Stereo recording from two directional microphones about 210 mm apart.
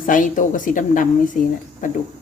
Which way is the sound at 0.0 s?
40° left (ahead or behind).